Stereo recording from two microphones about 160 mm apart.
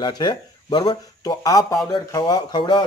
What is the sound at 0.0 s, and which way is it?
Speech, 30° left (ahead or behind).